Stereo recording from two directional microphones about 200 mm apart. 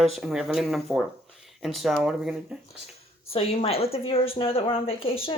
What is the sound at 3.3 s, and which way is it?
A woman's voice, 30° left (ahead or behind).